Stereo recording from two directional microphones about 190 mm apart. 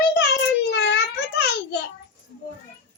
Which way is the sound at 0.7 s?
60° left (ahead or behind).